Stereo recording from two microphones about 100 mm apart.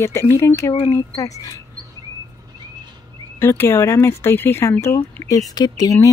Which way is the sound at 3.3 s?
25° left (ahead or behind).